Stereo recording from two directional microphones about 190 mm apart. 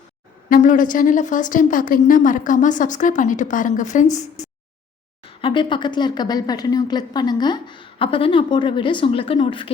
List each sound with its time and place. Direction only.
0.5 s speech: 45° left (ahead or behind)
5.4 s a woman's voice: 25° left (ahead or behind)